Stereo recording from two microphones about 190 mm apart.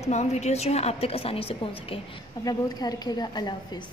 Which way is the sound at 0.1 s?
35° left (ahead or behind).